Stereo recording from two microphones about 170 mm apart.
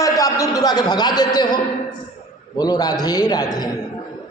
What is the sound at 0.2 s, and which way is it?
A man's voice, 20° left (ahead or behind).